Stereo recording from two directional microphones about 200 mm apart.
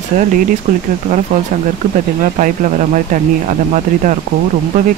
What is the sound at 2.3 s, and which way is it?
Speech, 40° right (ahead or behind).